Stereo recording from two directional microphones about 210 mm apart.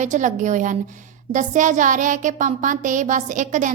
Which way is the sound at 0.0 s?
35° right (ahead or behind).